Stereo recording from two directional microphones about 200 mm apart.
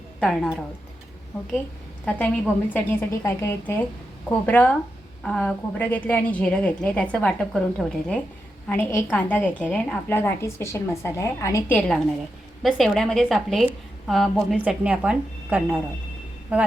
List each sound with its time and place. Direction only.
0.2 s a woman's voice: centre (ahead or behind)
2.0 s a woman's voice: 5° left (ahead or behind)